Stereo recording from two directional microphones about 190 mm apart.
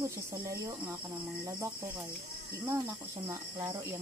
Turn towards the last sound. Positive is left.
turn(degrees=-15)  # may be behind; listen again after turning